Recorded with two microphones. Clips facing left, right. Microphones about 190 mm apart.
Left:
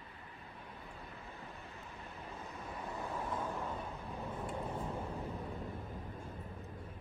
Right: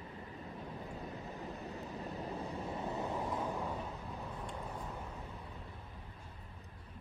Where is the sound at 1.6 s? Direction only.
40° right (ahead or behind); by 3.3 s 20° right (ahead or behind).